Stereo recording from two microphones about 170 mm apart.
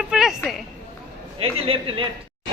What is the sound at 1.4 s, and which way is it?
Speech, 35° right (ahead or behind).